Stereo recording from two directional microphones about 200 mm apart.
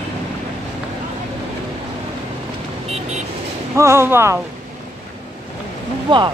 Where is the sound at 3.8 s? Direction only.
15° right (ahead or behind).